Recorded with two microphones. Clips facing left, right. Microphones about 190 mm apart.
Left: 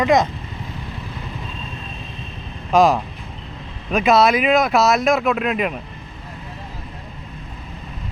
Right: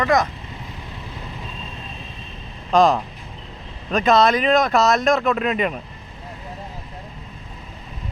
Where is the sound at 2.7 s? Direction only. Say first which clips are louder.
Left 1 dB; 5° left (ahead or behind).